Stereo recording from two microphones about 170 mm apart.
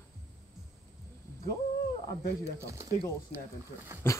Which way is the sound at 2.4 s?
15° right (ahead or behind).